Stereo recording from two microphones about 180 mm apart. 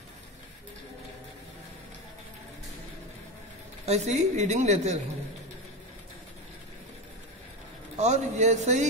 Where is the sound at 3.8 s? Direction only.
35° right (ahead or behind).